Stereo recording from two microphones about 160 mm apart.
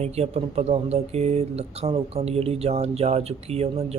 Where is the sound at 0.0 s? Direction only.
40° right (ahead or behind).